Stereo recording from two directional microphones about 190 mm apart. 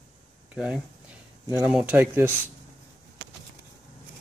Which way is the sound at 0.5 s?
5° right (ahead or behind).